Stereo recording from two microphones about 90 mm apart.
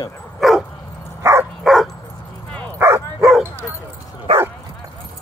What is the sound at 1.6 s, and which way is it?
Dog, centre (ahead or behind).